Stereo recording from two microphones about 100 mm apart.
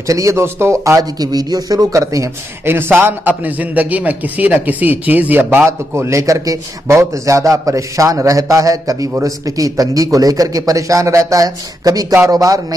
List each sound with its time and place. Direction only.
0.0 s a man's voice: 30° right (ahead or behind)
2.6 s a man's voice: 25° right (ahead or behind)